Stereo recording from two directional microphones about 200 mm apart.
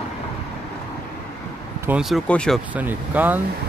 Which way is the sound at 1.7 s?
10° right (ahead or behind).